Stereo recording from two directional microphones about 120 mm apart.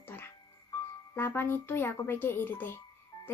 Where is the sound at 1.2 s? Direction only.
20° left (ahead or behind).